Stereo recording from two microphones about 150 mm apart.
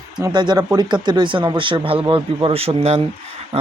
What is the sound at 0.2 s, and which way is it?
A man's voice, 30° right (ahead or behind).